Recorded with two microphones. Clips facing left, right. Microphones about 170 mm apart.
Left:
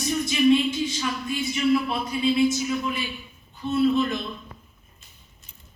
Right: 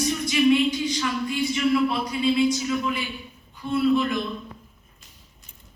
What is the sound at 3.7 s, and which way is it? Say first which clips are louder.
Speech: even; 25° left (ahead or behind).